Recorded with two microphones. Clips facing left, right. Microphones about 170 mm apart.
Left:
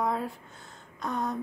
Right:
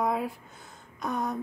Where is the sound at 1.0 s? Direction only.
5° right (ahead or behind).